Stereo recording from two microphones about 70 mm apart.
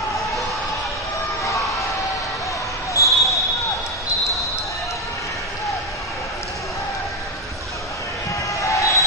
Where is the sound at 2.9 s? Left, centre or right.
Left.